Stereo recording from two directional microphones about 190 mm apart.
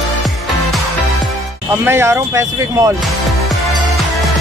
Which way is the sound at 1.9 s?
15° right (ahead or behind).